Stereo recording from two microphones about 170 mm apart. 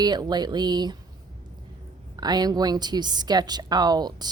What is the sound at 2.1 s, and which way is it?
Speech, 25° right (ahead or behind).